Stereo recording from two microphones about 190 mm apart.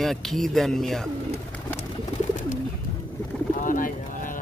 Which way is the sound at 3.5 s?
45° left (ahead or behind).